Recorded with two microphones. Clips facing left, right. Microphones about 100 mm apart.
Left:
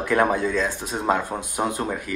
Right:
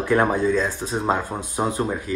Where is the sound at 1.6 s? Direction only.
30° right (ahead or behind).